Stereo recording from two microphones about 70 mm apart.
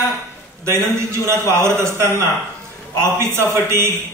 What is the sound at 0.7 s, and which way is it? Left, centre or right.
A man's voice, right.